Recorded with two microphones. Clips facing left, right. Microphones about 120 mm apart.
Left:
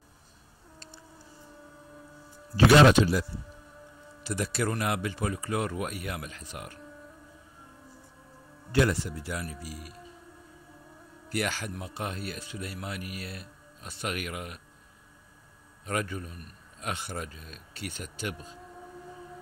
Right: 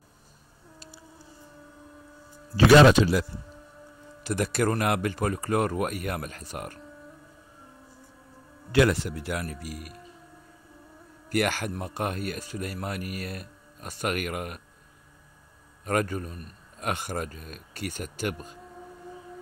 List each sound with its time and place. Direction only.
2.5 s speech: 90° right
4.2 s a man's voice: 55° right (ahead or behind)
8.7 s speech: 80° right; by 10.0 s 55° right (ahead or behind)
11.2 s a man's voice: 55° right (ahead or behind)
15.8 s a man's voice: 50° right (ahead or behind)